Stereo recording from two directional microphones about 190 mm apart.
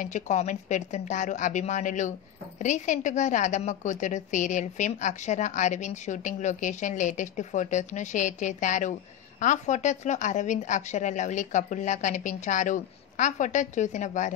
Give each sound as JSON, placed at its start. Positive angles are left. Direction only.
{"t": 0.0, "sound": "a woman's voice", "side_deg": 40}